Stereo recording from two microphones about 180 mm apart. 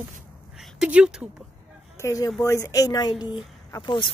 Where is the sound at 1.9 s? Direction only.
15° left (ahead or behind).